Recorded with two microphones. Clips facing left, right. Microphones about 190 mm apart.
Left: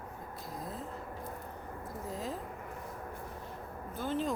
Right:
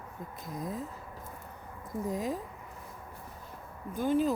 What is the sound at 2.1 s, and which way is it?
Speech, 15° right (ahead or behind).